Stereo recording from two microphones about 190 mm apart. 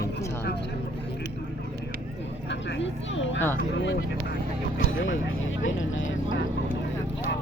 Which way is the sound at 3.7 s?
70° left (ahead or behind).